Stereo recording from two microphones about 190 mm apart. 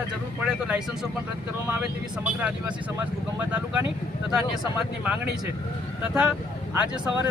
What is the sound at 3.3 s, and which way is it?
Speech, 10° right (ahead or behind).